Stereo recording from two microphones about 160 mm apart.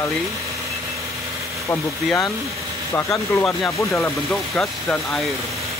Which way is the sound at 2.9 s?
15° left (ahead or behind).